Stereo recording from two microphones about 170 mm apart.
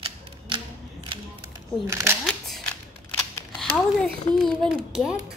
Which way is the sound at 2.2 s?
5° left (ahead or behind).